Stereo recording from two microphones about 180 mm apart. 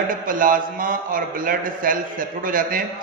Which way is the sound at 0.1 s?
50° right (ahead or behind).